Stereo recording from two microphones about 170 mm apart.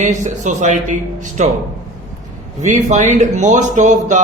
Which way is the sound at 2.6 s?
45° right (ahead or behind).